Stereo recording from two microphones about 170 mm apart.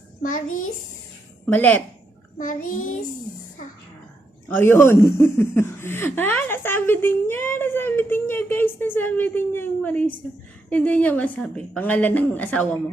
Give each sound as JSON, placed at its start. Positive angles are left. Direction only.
{"t": 0.2, "sound": "a child's voice", "side_deg": 50}
{"t": 1.5, "sound": "speech", "side_deg": 10}
{"t": 2.4, "sound": "a child's voice", "side_deg": 50}
{"t": 4.4, "sound": "speech", "side_deg": 10}